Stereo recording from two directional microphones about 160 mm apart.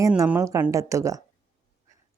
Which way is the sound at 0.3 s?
15° right (ahead or behind).